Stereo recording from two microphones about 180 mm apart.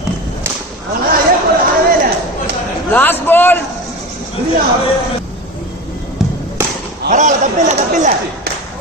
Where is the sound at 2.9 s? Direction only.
10° left (ahead or behind).